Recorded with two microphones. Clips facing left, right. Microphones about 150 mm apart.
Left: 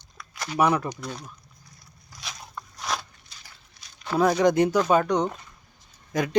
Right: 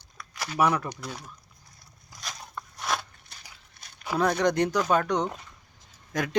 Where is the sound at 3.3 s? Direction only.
60° right (ahead or behind).